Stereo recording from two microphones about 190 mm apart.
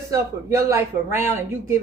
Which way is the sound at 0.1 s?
15° right (ahead or behind).